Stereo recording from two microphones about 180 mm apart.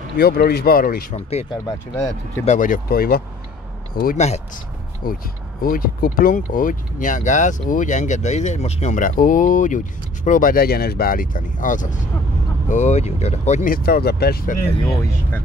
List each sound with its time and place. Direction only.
0.2 s speech: 60° left (ahead or behind)
1.1 s speech: 35° left (ahead or behind)
13.8 s speech: 60° left (ahead or behind)
14.9 s speech: 15° left (ahead or behind)